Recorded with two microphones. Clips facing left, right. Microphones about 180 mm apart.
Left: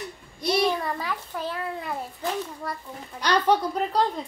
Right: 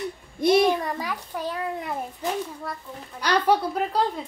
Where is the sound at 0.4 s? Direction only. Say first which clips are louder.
Right 6 dB; 50° right (ahead or behind).